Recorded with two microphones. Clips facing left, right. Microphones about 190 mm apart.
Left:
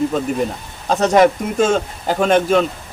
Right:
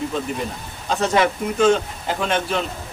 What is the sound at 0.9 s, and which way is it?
Speech, 45° left (ahead or behind).